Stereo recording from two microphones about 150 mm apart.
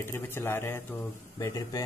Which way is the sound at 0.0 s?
15° left (ahead or behind).